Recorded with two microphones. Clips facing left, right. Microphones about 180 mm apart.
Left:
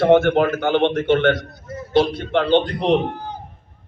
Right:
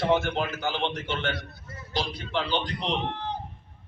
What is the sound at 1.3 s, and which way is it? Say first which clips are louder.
A man's voice: left 9 dB; 45° left (ahead or behind).